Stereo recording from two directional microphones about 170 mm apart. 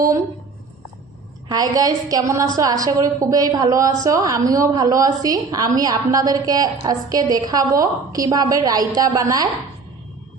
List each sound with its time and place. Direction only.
1.5 s a woman's voice: 20° right (ahead or behind)